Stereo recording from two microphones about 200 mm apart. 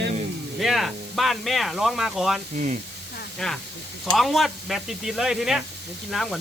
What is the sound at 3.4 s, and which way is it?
Speech, centre (ahead or behind).